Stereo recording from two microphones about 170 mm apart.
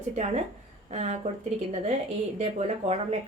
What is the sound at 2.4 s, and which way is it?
Speech, 40° right (ahead or behind).